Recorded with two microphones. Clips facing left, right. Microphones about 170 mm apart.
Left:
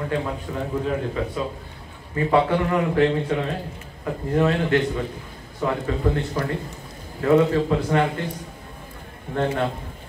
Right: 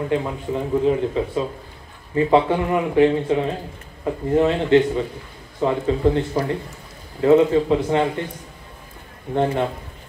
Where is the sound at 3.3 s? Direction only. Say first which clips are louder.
Right 4 dB; 20° right (ahead or behind).